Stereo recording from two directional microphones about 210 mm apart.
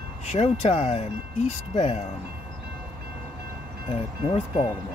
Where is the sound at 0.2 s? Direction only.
30° left (ahead or behind).